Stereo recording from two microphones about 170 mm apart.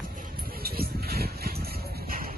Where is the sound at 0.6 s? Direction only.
65° right (ahead or behind).